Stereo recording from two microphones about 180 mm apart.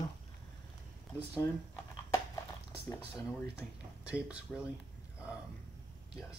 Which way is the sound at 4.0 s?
5° right (ahead or behind).